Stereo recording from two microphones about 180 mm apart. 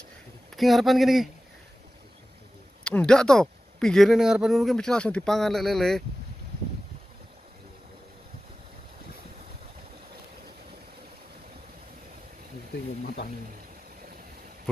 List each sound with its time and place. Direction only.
0.6 s speech: centre (ahead or behind)
2.8 s speech: 5° left (ahead or behind)
12.7 s speech: 60° left (ahead or behind)